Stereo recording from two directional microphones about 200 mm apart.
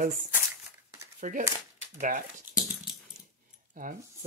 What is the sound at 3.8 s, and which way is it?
Speech, 45° right (ahead or behind).